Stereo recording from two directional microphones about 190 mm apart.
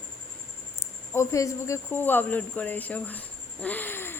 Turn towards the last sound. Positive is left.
turn(degrees=10)  # may be behind; listen again after turning